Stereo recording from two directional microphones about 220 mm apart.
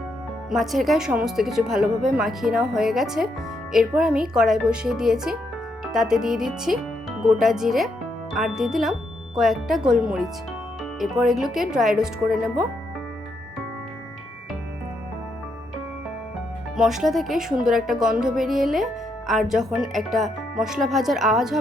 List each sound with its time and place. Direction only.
0.5 s speech: centre (ahead or behind)
16.7 s speech: centre (ahead or behind)